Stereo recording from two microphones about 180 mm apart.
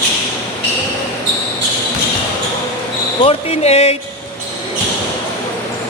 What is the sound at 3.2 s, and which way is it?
Speech, 35° left (ahead or behind).